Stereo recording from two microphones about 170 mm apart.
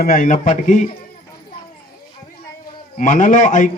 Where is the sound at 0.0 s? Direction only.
55° left (ahead or behind).